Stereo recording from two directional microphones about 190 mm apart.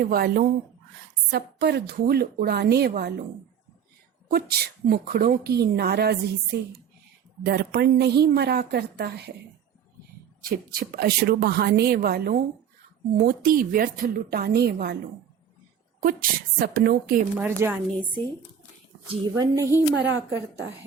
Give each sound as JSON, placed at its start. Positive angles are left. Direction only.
{"t": 0.0, "sound": "a woman's voice", "side_deg": -50}
{"t": 4.3, "sound": "speech", "side_deg": -55}
{"t": 10.4, "sound": "a woman's voice", "side_deg": -50}
{"t": 16.0, "sound": "a woman's voice", "side_deg": -50}
{"t": 17.3, "sound": "speech", "side_deg": -10}
{"t": 19.3, "sound": "speech", "side_deg": -15}
{"t": 19.9, "sound": "a woman's voice", "side_deg": -75}